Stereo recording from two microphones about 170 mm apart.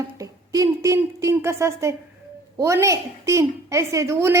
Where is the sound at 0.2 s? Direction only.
20° right (ahead or behind).